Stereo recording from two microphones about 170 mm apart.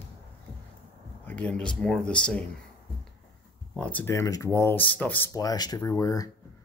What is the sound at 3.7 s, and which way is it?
Speech, 10° left (ahead or behind).